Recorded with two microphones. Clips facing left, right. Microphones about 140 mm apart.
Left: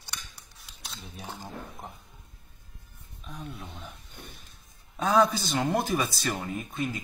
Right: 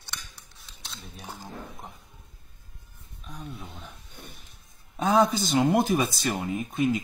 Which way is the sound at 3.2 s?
Centre (ahead or behind).